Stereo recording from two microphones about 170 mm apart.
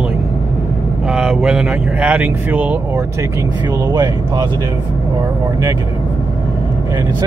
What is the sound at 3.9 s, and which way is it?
Speech, 25° right (ahead or behind).